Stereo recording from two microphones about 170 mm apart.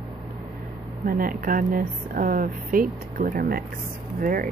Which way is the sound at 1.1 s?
55° right (ahead or behind).